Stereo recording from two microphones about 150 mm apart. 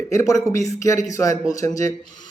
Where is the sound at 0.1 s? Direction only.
20° left (ahead or behind).